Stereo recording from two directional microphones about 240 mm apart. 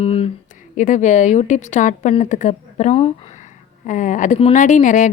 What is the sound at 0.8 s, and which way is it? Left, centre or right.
A woman's voice, left.